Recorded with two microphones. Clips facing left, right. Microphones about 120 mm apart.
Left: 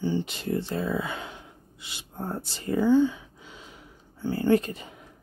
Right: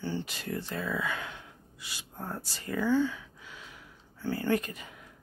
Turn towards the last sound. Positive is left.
turn(degrees=30)  # may be behind; listen again after turning